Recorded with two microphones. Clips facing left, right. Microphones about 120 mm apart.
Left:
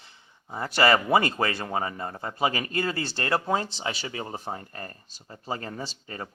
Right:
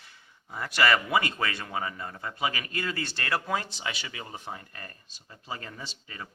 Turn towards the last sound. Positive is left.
turn(degrees=40)  # may be behind; listen again after turning